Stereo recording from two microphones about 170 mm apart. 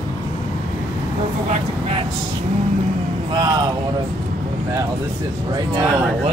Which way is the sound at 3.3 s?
25° right (ahead or behind).